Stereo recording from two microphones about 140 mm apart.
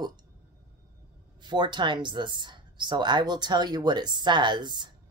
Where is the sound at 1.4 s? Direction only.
35° right (ahead or behind).